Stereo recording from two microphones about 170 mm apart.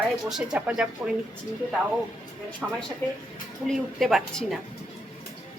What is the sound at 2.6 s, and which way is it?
A woman's voice, 10° right (ahead or behind).